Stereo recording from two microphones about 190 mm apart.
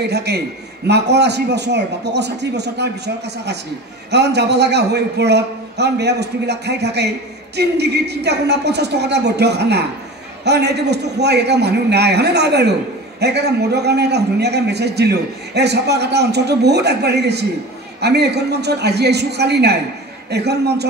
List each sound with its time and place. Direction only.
0.0 s a man's voice: 60° right (ahead or behind)
4.1 s a man's voice: 60° right (ahead or behind)